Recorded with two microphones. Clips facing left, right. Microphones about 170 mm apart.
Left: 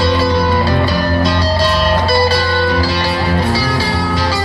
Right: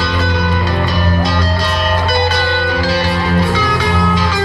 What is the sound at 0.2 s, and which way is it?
Music, 35° left (ahead or behind).